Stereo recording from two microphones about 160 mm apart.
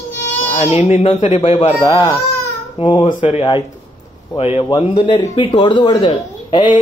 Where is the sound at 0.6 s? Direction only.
40° left (ahead or behind).